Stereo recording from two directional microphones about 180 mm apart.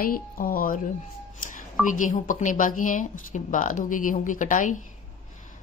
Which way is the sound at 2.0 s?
45° left (ahead or behind).